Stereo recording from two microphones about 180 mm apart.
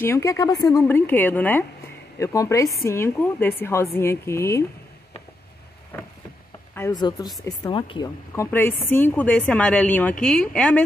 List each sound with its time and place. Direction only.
0.0 s a woman's voice: 15° left (ahead or behind)
5.9 s a woman's voice: 10° left (ahead or behind)
8.4 s a woman's voice: 10° left (ahead or behind)